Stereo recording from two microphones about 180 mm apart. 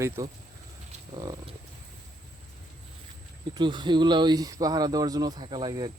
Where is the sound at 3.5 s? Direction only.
25° right (ahead or behind).